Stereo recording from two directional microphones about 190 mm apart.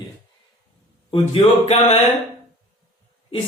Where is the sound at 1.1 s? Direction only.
35° left (ahead or behind).